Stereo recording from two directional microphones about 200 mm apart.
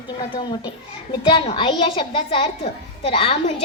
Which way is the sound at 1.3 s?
25° left (ahead or behind).